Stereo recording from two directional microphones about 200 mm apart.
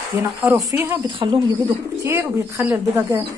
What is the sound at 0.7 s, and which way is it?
Speech, 10° right (ahead or behind).